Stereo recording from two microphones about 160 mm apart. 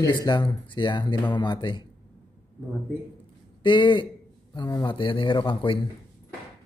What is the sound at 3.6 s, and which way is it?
A man's voice, 30° left (ahead or behind).